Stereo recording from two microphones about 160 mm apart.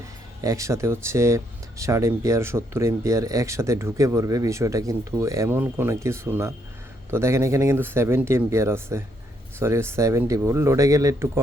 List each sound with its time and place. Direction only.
0.4 s speech: 20° right (ahead or behind)